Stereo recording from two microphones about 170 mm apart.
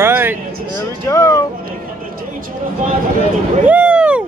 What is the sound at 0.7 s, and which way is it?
Speech, 15° left (ahead or behind).